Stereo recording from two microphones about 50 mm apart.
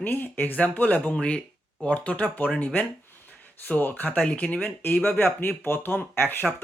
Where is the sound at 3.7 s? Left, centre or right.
Left.